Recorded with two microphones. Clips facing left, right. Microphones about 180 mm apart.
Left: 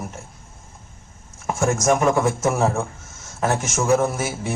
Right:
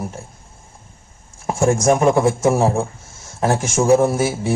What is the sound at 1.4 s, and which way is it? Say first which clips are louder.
A man's voice: right 4 dB; 30° right (ahead or behind).